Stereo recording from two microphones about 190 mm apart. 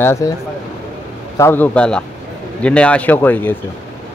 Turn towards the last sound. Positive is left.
turn(degrees=10)  # may be behind; listen again after turning